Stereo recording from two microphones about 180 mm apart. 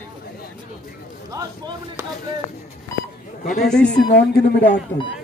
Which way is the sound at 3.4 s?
45° left (ahead or behind).